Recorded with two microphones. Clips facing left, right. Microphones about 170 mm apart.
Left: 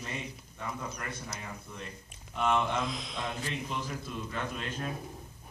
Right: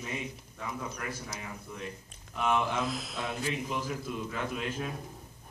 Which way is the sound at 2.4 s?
5° right (ahead or behind).